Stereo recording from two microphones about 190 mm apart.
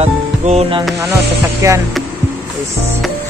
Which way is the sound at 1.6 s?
15° right (ahead or behind).